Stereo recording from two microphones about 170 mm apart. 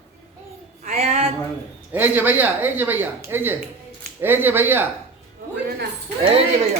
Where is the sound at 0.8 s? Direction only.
40° right (ahead or behind).